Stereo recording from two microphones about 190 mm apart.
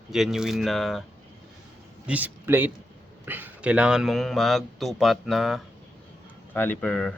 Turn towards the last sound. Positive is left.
turn(degrees=5)  # may be behind; listen again after turning